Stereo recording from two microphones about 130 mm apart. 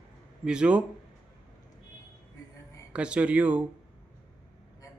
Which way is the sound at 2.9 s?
10° right (ahead or behind).